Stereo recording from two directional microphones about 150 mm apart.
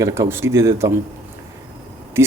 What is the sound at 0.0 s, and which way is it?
Speech, 15° right (ahead or behind).